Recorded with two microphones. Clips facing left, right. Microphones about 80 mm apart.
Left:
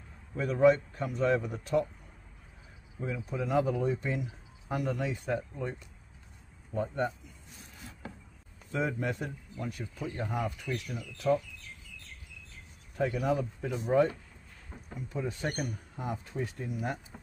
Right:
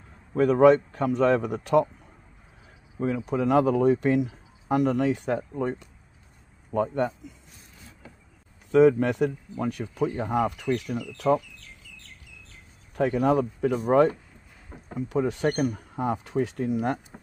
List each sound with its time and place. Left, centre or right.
0.3 s speech: right
3.3 s speech: right
8.7 s speech: right
12.9 s speech: right
15.0 s speech: right
16.0 s speech: right